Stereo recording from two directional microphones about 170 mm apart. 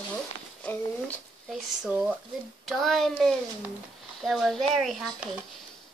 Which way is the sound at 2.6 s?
Centre (ahead or behind).